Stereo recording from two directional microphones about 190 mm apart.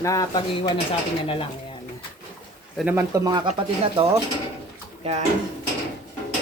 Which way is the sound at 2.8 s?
10° right (ahead or behind).